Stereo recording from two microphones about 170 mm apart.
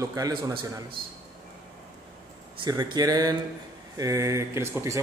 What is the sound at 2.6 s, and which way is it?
A man's voice, 25° right (ahead or behind).